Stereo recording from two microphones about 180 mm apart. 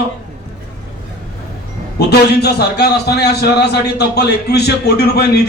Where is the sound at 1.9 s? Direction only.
65° left (ahead or behind).